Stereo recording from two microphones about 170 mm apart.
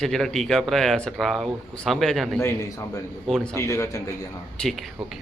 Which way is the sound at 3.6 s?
20° left (ahead or behind).